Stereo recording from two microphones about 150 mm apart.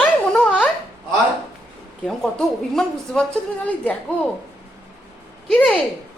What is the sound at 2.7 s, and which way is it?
A woman's voice, 5° left (ahead or behind).